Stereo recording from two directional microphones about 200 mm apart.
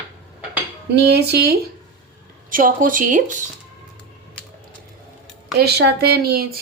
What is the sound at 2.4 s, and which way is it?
Speech, 45° right (ahead or behind).